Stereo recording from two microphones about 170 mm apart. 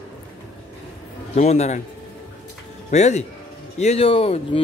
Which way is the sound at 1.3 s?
40° left (ahead or behind).